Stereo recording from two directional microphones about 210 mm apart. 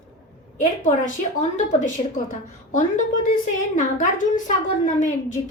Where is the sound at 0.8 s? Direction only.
35° left (ahead or behind).